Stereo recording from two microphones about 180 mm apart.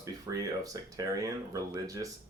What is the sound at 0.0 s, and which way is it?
Speech, 20° right (ahead or behind).